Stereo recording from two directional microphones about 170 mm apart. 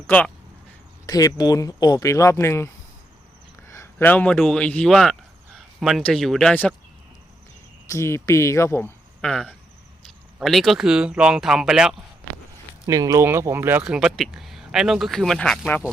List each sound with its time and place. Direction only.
1.0 s speech: 20° left (ahead or behind)
7.9 s speech: 15° left (ahead or behind)
9.2 s speech: 5° left (ahead or behind)
12.9 s speech: 20° right (ahead or behind); by 15.8 s 5° left (ahead or behind)